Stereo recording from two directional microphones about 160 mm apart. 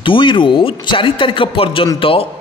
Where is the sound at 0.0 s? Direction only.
30° left (ahead or behind).